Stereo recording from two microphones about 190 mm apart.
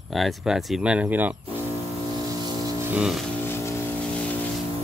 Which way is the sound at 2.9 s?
Centre (ahead or behind).